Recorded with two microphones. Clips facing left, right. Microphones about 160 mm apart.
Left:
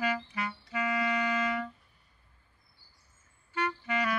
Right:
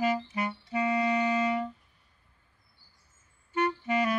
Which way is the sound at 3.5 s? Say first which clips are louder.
Right 5 dB; 25° right (ahead or behind).